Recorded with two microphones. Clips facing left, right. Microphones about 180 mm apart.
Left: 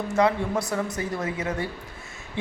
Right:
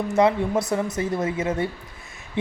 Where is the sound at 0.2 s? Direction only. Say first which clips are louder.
Right 3 dB; 20° right (ahead or behind).